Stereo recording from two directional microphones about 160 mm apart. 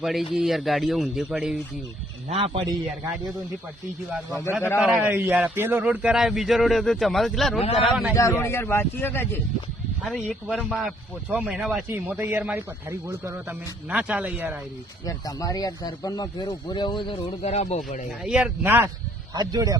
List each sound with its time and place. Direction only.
0.0 s a man's voice: centre (ahead or behind)
2.3 s a man's voice: 40° right (ahead or behind)
4.8 s a man's voice: 5° right (ahead or behind)
8.1 s a man's voice: 20° left (ahead or behind); by 14.6 s 10° right (ahead or behind)
15.0 s speech: 20° left (ahead or behind)
17.4 s speech: 40° left (ahead or behind)
18.2 s a man's voice: 5° right (ahead or behind)
19.3 s speech: 25° right (ahead or behind)